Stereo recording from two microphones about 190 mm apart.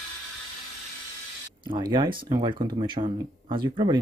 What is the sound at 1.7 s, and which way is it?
Speech, 25° right (ahead or behind).